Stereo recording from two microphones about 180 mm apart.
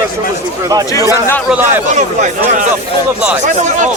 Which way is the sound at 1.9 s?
40° right (ahead or behind).